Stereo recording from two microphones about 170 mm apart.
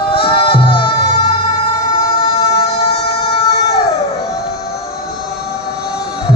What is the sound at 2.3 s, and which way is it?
Vehicle, 35° left (ahead or behind).